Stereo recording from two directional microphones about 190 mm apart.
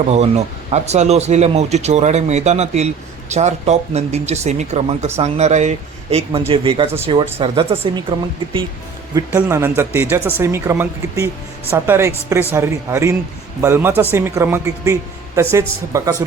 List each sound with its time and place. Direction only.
0.1 s speech: 35° right (ahead or behind)
9.1 s speech: 15° right (ahead or behind)